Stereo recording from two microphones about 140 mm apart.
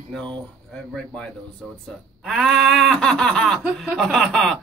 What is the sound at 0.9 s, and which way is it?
Speech, 5° left (ahead or behind).